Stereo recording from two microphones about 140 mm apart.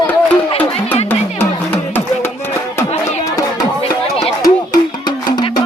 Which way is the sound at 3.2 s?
25° left (ahead or behind).